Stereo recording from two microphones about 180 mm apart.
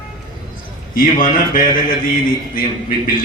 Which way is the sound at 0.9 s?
55° left (ahead or behind).